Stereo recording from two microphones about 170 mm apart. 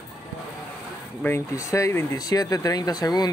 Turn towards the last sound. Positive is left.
turn(degrees=25)  # may be behind; listen again after turning